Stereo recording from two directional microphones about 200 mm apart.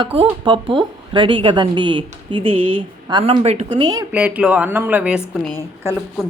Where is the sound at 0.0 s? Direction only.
30° right (ahead or behind).